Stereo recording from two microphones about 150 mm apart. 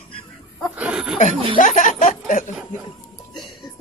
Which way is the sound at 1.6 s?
65° left (ahead or behind).